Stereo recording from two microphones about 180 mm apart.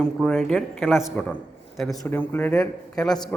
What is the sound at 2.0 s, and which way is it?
A man's voice, 10° left (ahead or behind).